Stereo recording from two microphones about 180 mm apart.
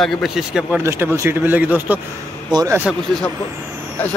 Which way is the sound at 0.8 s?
15° right (ahead or behind).